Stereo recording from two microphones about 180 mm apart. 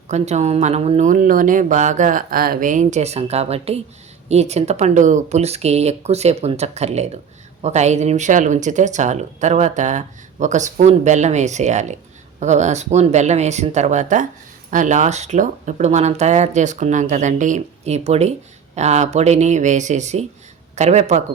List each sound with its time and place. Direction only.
0.1 s speech: 40° right (ahead or behind)